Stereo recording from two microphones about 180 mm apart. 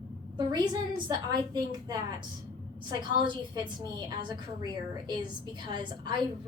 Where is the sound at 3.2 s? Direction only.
25° right (ahead or behind).